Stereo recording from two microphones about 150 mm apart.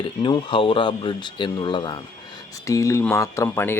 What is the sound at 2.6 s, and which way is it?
Speech, 20° left (ahead or behind).